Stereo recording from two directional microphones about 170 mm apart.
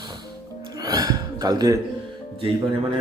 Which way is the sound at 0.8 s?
20° right (ahead or behind).